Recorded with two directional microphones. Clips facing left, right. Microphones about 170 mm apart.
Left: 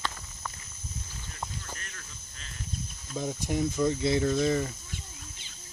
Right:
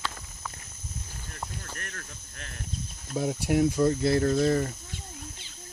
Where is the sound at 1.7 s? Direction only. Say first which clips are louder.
Right 4 dB; 60° right (ahead or behind).